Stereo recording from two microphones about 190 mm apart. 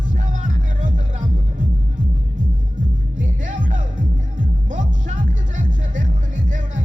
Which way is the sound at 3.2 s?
40° right (ahead or behind).